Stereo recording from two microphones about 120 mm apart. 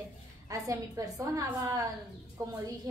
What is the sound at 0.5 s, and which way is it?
A woman's voice, 30° right (ahead or behind).